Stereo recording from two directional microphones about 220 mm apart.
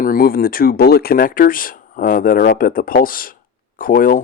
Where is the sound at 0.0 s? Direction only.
40° left (ahead or behind).